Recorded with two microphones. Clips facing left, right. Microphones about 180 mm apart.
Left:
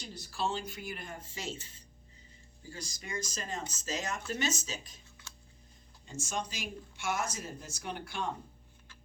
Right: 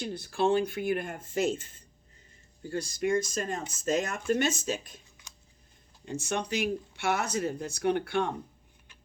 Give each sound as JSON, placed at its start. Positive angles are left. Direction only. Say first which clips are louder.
{"t": 0.0, "sound": "speech", "louder": "right 8 dB", "side_deg": -55}
{"t": 6.1, "sound": "speech", "louder": "right 7 dB", "side_deg": -65}